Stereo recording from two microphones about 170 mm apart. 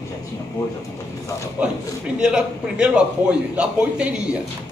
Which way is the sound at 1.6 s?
5° right (ahead or behind).